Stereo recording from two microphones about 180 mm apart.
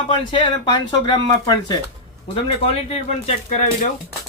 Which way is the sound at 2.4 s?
30° left (ahead or behind).